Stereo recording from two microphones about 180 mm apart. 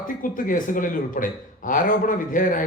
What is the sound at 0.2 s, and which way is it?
Speech, 50° left (ahead or behind).